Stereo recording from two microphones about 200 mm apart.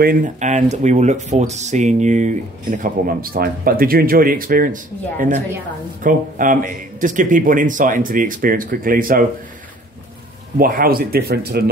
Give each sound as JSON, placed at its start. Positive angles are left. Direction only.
{"t": 0.0, "sound": "speech", "side_deg": -40}
{"t": 6.0, "sound": "speech", "side_deg": -40}
{"t": 10.6, "sound": "speech", "side_deg": -45}